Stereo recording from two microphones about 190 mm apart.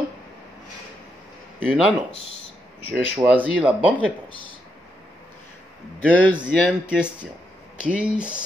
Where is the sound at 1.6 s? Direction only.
5° left (ahead or behind).